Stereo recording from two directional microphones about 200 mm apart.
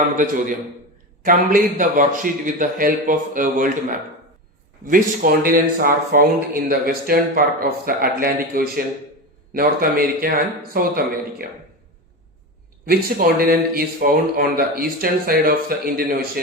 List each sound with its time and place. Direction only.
0.2 s a man's voice: 40° right (ahead or behind)
4.9 s speech: 45° right (ahead or behind)
12.9 s speech: 50° right (ahead or behind)